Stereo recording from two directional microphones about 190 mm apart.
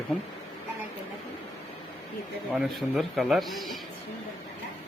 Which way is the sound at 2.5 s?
Centre (ahead or behind).